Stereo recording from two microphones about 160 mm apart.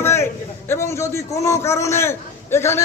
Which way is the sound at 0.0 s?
15° left (ahead or behind).